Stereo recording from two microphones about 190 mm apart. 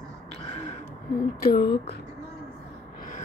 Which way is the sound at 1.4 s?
55° left (ahead or behind).